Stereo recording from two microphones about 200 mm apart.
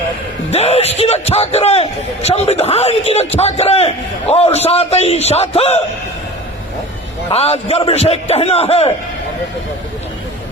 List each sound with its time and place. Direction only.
0.5 s a man's voice: 30° left (ahead or behind)
7.3 s a man's voice: 30° left (ahead or behind)